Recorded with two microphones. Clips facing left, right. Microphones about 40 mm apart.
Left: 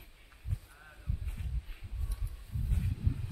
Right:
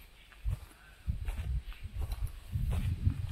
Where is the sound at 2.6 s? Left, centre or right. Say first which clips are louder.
Left 1 dB; right.